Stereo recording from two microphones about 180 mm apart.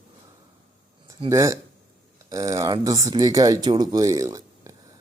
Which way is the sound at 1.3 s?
15° right (ahead or behind).